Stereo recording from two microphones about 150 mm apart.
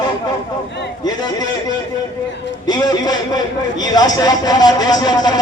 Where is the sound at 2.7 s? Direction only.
25° left (ahead or behind).